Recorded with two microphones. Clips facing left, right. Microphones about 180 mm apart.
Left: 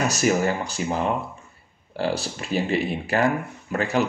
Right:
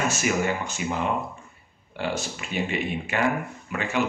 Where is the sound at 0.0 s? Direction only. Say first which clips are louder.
Left 4 dB; 40° left (ahead or behind).